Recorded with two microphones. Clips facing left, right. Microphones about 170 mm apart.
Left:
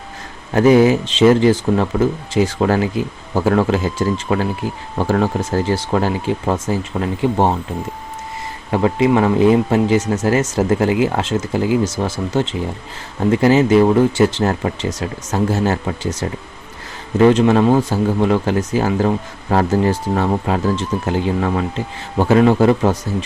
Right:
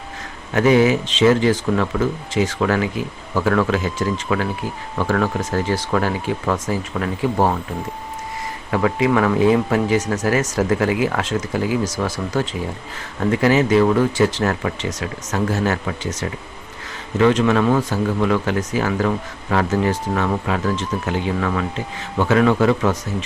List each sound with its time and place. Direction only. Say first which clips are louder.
0.5 s speech: left 3 dB; 35° left (ahead or behind)
8.7 s speech: left 3 dB; 30° left (ahead or behind)
17.2 s speech: left 4 dB; 30° left (ahead or behind)